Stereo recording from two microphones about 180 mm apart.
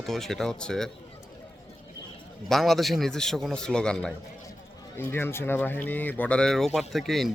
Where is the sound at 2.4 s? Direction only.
Centre (ahead or behind).